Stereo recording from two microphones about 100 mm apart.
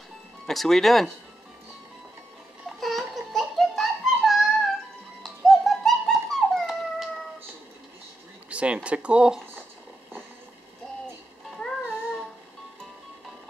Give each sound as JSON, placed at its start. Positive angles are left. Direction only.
{"t": 0.5, "sound": "speech", "side_deg": 5}
{"t": 2.8, "sound": "a sound", "side_deg": 0}
{"t": 5.2, "sound": "dog", "side_deg": 0}
{"t": 8.5, "sound": "speech", "side_deg": -10}
{"t": 11.5, "sound": "music", "side_deg": 5}